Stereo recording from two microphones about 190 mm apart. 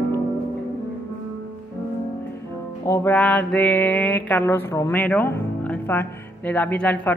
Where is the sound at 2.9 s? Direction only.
10° left (ahead or behind).